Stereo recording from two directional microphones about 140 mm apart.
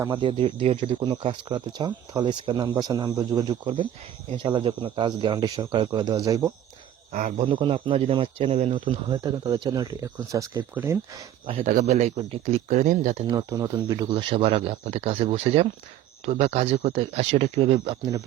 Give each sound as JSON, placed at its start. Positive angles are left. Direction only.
{"t": 0.1, "sound": "speech", "side_deg": -35}
{"t": 3.4, "sound": "speech", "side_deg": -40}
{"t": 7.1, "sound": "speech", "side_deg": -65}
{"t": 7.4, "sound": "speech", "side_deg": -40}
{"t": 11.6, "sound": "speech", "side_deg": -70}
{"t": 13.3, "sound": "speech", "side_deg": -25}
{"t": 17.7, "sound": "speech", "side_deg": -30}